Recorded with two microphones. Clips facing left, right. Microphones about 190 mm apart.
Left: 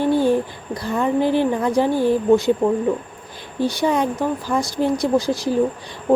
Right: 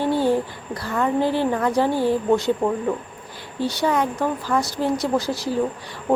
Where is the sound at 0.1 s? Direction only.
15° left (ahead or behind).